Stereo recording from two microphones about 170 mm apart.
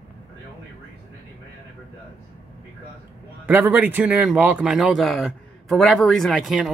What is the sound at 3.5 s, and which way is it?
A man's voice, 10° right (ahead or behind).